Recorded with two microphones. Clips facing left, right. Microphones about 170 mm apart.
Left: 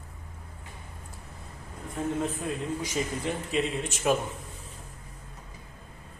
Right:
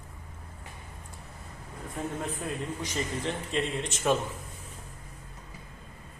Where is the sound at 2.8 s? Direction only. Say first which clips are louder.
Even; 10° left (ahead or behind).